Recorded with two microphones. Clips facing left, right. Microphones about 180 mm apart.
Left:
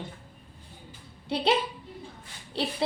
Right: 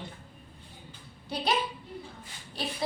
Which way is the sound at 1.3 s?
30° left (ahead or behind).